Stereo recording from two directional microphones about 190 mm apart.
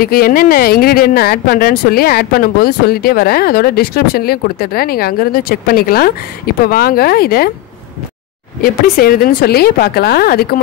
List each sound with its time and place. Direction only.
0.0 s speech: 50° left (ahead or behind)
8.6 s speech: 50° left (ahead or behind)